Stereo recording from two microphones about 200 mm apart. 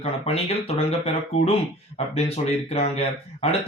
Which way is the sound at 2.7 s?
30° left (ahead or behind).